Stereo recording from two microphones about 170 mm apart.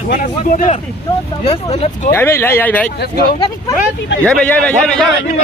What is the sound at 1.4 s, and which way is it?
Speech, 35° left (ahead or behind).